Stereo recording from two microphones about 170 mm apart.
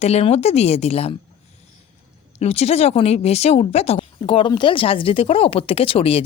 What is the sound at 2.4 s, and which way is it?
A woman's voice, 40° left (ahead or behind).